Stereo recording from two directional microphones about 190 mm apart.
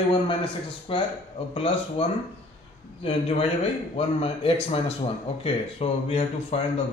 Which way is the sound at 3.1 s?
30° left (ahead or behind).